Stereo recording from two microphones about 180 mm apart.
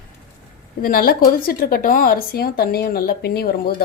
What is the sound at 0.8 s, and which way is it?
A woman's voice, 55° left (ahead or behind).